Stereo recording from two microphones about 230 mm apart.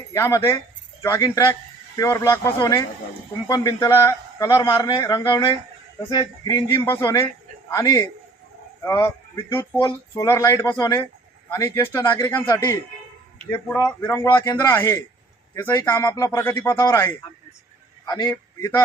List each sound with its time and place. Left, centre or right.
0.1 s a man's voice: centre